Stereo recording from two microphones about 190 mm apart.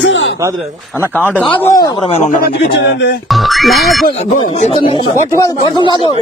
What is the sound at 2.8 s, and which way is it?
Speech, 65° left (ahead or behind).